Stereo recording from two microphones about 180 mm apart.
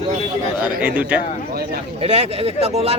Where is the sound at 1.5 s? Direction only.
60° right (ahead or behind).